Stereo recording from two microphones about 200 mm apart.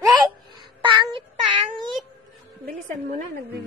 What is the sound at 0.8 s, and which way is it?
Child singing, 25° right (ahead or behind).